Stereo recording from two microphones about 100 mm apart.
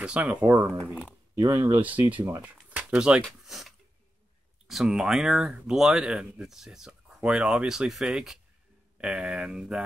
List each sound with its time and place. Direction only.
0.0 s speech: 10° right (ahead or behind)
0.5 s speech: 25° right (ahead or behind)
1.8 s speech: 15° right (ahead or behind)
2.4 s a sound: 15° right (ahead or behind)
4.6 s speech: 5° right (ahead or behind)